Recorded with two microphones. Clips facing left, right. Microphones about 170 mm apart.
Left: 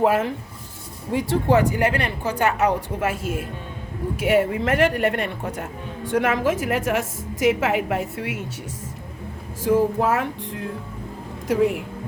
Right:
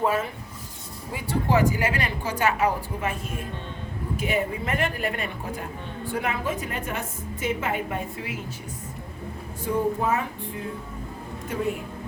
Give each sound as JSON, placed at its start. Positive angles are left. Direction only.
{"t": 1.1, "sound": "a woman's voice", "side_deg": 75}
{"t": 6.1, "sound": "a woman's voice", "side_deg": 90}
{"t": 9.6, "sound": "a woman's voice", "side_deg": 90}
{"t": 11.4, "sound": "speech", "side_deg": 80}